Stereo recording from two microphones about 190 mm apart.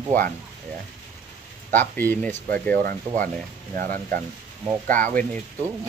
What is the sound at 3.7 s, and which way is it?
Speech, 45° right (ahead or behind).